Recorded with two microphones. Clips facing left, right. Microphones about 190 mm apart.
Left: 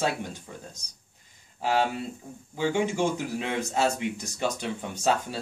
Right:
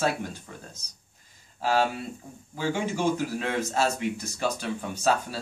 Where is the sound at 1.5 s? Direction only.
20° left (ahead or behind).